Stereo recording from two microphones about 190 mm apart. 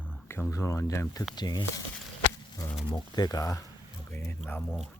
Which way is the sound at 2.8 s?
20° left (ahead or behind).